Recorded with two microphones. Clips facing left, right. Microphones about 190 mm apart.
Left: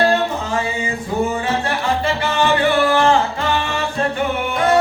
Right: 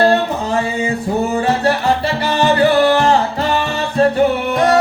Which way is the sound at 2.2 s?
40° right (ahead or behind).